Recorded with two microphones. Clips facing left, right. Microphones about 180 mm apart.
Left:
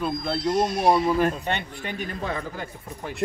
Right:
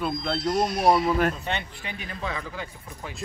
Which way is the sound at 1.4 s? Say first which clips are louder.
Left 3 dB; 50° left (ahead or behind).